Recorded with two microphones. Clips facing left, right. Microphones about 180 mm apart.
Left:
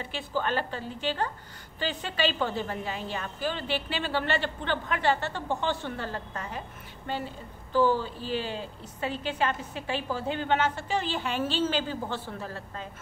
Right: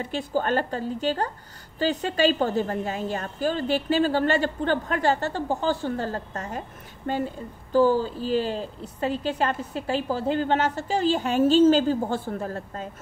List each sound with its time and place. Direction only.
0.0 s a woman's voice: 45° right (ahead or behind)